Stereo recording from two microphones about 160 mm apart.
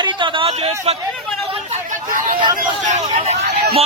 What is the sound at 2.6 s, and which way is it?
Speech, 50° right (ahead or behind).